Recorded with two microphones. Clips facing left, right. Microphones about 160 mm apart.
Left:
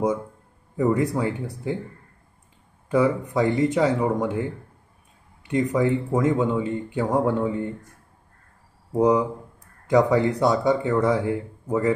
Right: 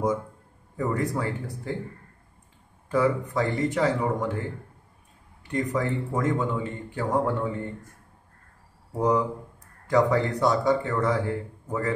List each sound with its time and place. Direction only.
0.8 s speech: 15° left (ahead or behind)
2.9 s speech: 20° left (ahead or behind)
5.5 s speech: 20° left (ahead or behind)
8.9 s speech: 15° left (ahead or behind)